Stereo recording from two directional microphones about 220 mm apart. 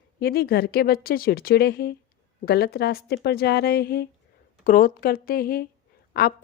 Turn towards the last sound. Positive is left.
turn(degrees=45)  # may be behind; listen again after turning